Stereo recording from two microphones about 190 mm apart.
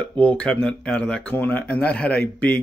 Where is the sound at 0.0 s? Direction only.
10° left (ahead or behind).